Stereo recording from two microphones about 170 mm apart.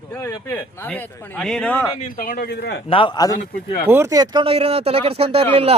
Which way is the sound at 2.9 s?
30° left (ahead or behind).